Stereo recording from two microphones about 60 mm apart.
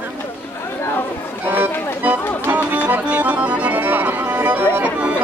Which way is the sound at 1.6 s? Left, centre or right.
Right.